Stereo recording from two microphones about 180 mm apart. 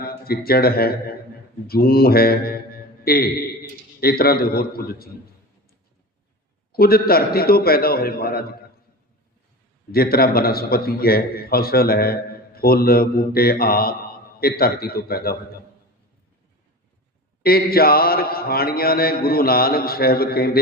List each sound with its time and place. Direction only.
0.0 s a man's voice: 55° left (ahead or behind)
6.7 s a man's voice: 55° left (ahead or behind)
9.9 s a man's voice: 55° left (ahead or behind)
17.4 s a man's voice: 55° left (ahead or behind)